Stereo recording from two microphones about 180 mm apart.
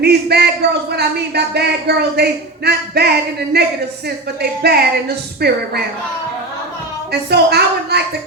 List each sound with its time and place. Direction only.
0.0 s a woman's voice: 65° right (ahead or behind)
7.1 s a woman's voice: 65° right (ahead or behind)